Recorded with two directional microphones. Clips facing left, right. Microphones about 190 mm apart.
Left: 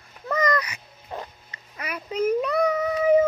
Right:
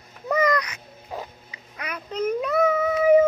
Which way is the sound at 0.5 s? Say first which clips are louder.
Even; 10° left (ahead or behind).